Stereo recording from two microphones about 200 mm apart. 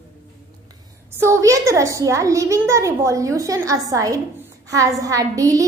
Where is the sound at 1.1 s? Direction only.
15° right (ahead or behind).